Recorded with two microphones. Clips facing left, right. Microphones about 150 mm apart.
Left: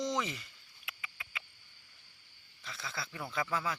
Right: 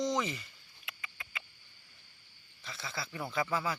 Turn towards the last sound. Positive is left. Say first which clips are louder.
# right 2 dB
turn(degrees=0)  # may be behind; listen again after turning